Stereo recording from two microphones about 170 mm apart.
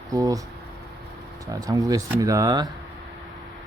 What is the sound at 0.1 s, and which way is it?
Speech, 20° right (ahead or behind).